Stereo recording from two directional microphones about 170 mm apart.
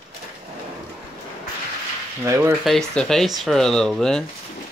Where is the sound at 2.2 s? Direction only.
15° right (ahead or behind).